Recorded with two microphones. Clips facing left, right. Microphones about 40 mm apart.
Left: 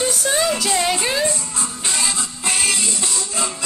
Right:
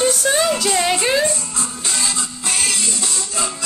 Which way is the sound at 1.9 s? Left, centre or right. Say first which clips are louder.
Even; centre.